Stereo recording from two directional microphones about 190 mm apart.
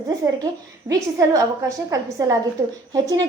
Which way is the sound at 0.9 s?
15° right (ahead or behind).